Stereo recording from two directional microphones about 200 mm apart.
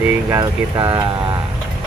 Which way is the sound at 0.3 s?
20° right (ahead or behind).